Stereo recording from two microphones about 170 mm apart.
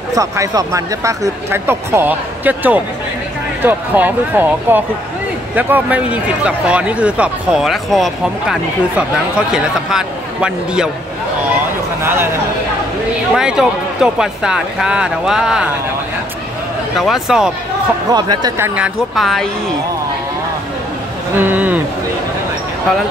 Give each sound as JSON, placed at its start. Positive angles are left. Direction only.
{"t": 0.1, "sound": "speech", "side_deg": -20}
{"t": 12.0, "sound": "speech", "side_deg": -15}
{"t": 13.3, "sound": "speech", "side_deg": -5}
{"t": 16.9, "sound": "speech", "side_deg": 0}
{"t": 18.1, "sound": "speech", "side_deg": -25}
{"t": 18.8, "sound": "speech", "side_deg": 0}
{"t": 21.4, "sound": "speech", "side_deg": -10}